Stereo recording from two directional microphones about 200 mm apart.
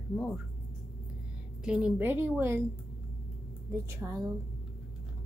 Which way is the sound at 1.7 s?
5° right (ahead or behind).